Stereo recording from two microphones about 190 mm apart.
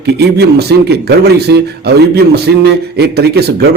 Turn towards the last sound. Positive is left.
turn(degrees=-60)  # may be behind; listen again after turning